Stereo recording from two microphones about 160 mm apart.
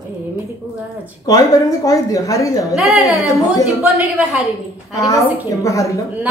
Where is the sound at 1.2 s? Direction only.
20° left (ahead or behind).